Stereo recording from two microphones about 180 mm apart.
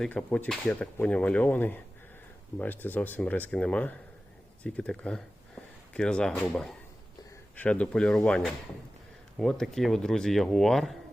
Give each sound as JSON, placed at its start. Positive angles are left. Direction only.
{"t": 0.0, "sound": "speech", "side_deg": 5}